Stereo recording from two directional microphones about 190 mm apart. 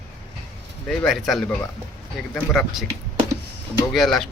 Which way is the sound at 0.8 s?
Centre (ahead or behind).